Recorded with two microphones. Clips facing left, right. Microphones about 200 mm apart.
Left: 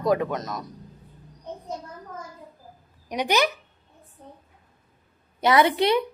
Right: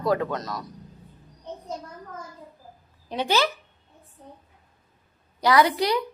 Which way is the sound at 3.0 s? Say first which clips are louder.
Left 1 dB; 15° left (ahead or behind).